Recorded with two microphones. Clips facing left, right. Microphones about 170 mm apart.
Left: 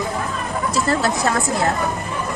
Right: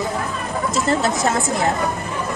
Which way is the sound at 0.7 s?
20° right (ahead or behind).